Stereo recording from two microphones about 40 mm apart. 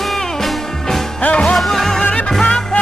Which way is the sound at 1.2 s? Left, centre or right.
Left.